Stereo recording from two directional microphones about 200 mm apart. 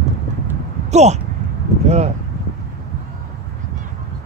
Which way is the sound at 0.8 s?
35° right (ahead or behind).